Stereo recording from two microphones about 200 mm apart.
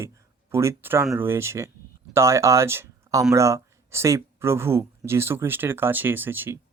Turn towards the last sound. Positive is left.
turn(degrees=-10)  # may be behind; listen again after turning